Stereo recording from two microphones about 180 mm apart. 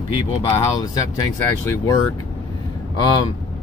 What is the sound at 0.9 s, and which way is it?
Speech, 15° left (ahead or behind).